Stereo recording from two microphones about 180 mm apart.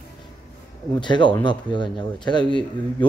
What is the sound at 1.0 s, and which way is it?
Speech, 25° left (ahead or behind).